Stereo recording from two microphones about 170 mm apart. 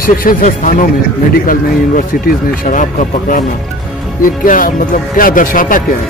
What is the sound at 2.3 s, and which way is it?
Speech, 45° left (ahead or behind).